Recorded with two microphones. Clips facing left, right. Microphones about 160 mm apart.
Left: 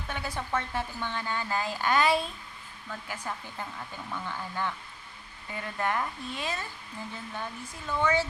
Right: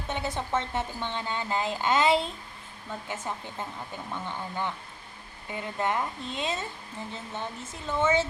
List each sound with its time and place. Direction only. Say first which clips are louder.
0.1 s a woman's voice: right 3 dB; 20° right (ahead or behind)